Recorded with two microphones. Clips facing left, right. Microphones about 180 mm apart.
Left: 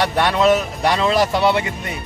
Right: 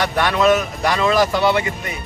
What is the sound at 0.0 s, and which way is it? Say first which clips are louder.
Speech: left 1 dB; 30° left (ahead or behind).